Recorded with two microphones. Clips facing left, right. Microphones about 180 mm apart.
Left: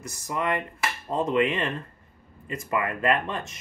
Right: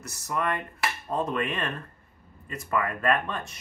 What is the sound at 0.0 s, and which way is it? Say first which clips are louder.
Speech: left 1 dB; 15° left (ahead or behind).